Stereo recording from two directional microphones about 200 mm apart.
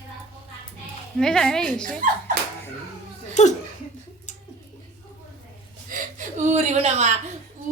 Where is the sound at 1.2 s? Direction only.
Centre (ahead or behind).